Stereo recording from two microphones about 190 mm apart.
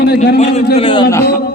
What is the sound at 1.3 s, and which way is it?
Speech, 55° left (ahead or behind).